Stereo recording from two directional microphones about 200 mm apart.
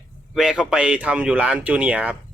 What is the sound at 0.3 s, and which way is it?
Speech, 5° right (ahead or behind).